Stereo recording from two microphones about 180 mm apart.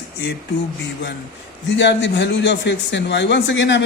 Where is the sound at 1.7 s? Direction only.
80° left.